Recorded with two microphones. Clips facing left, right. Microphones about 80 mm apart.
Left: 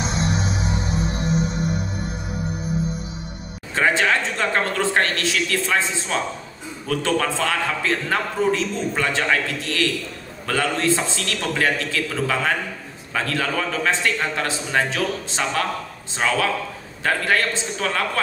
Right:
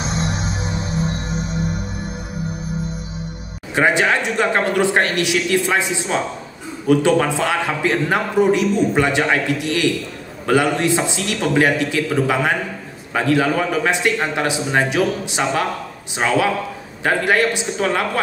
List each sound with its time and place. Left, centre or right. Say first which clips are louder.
3.7 s a man's voice: right 3 dB; centre